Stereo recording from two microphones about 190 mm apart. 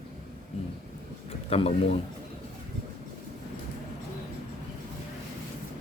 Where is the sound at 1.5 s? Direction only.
30° left (ahead or behind).